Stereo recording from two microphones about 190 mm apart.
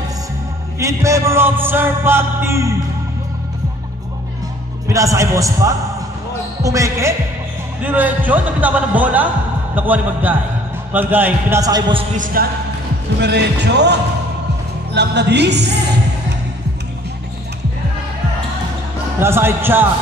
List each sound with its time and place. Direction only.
0.7 s music: 15° right (ahead or behind)
4.8 s music: 15° right (ahead or behind)
12.4 s speech: 50° right (ahead or behind)
13.2 s speech: 60° right (ahead or behind)
15.0 s speech: 60° right (ahead or behind)
19.1 s music: 10° right (ahead or behind)